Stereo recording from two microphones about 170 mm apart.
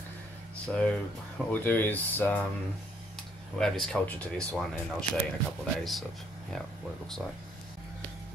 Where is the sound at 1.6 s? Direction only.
10° left (ahead or behind).